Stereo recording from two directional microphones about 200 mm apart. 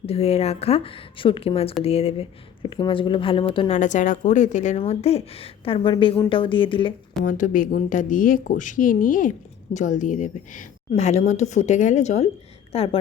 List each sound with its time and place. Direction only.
0.0 s a woman's voice: 30° left (ahead or behind)
3.8 s a woman's voice: 40° left (ahead or behind)
7.3 s a woman's voice: 40° left (ahead or behind)